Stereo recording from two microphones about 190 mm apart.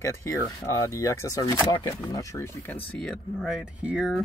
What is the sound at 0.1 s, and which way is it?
Speech, 15° left (ahead or behind).